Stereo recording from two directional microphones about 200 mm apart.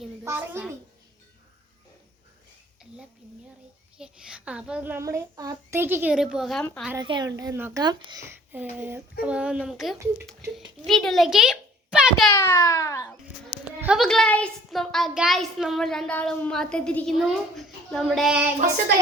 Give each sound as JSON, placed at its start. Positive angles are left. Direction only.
{"t": 0.3, "sound": "a woman's voice", "side_deg": -10}
{"t": 3.9, "sound": "a child's voice", "side_deg": -5}
{"t": 6.9, "sound": "a woman's voice", "side_deg": -20}
{"t": 12.3, "sound": "a child's voice", "side_deg": 15}
{"t": 13.8, "sound": "a child's voice", "side_deg": 0}